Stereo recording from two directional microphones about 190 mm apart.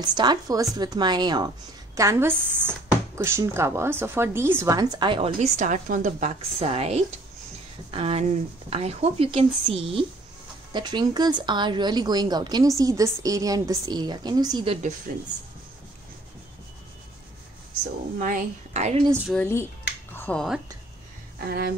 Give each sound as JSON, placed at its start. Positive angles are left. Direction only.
{"t": 0.0, "sound": "a woman's voice", "side_deg": -25}
{"t": 15.1, "sound": "speech", "side_deg": -50}
{"t": 18.2, "sound": "speech", "side_deg": -40}
{"t": 19.3, "sound": "speech", "side_deg": 5}
{"t": 21.5, "sound": "speech", "side_deg": -55}